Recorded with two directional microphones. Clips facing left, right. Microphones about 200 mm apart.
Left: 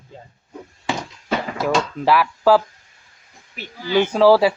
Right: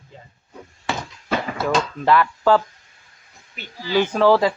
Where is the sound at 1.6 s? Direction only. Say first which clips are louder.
Left 2 dB; 5° left (ahead or behind).